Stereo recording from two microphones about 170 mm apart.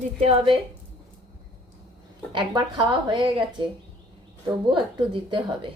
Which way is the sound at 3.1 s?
30° right (ahead or behind).